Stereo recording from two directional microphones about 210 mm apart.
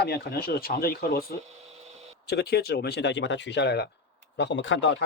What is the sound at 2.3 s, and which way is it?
Speech, 50° left (ahead or behind).